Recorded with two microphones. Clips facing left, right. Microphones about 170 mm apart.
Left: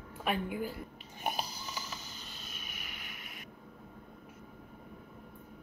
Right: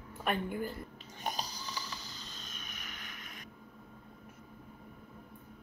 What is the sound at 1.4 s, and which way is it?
Snoring, 35° right (ahead or behind).